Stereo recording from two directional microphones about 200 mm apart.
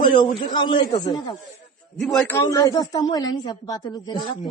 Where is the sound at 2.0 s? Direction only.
Centre (ahead or behind).